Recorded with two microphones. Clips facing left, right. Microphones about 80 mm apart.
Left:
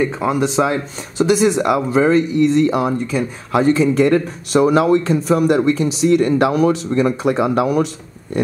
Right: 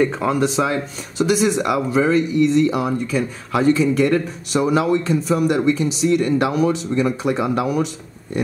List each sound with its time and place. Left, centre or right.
0.0 s speech: centre
0.3 s speech: centre
0.7 s speech: left
4.6 s speech: left